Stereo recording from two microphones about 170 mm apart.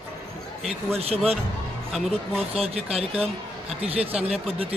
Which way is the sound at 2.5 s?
35° right (ahead or behind).